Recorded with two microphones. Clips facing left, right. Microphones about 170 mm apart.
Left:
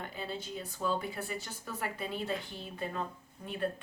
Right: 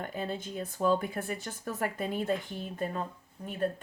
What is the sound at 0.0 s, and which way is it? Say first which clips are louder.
A woman's voice: right 5 dB; 50° right (ahead or behind).